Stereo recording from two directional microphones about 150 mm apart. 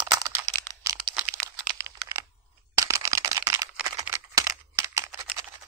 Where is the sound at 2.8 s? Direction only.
20° right (ahead or behind).